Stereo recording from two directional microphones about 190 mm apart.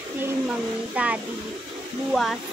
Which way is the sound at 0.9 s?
5° right (ahead or behind).